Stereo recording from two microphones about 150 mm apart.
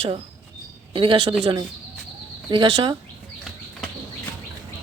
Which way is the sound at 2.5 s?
35° right (ahead or behind).